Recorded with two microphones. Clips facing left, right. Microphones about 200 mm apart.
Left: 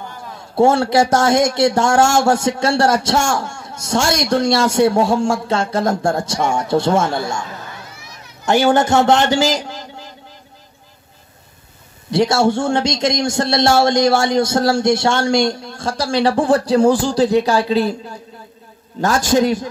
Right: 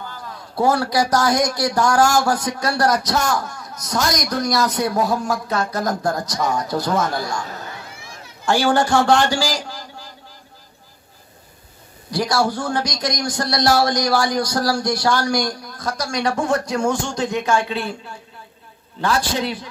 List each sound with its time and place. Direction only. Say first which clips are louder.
0.0 s a man's voice: left 2 dB; 25° left (ahead or behind)
8.5 s a man's voice: left 4 dB; 20° left (ahead or behind)
12.1 s a man's voice: left 6 dB; 25° left (ahead or behind); by 19.7 s 45° left (ahead or behind)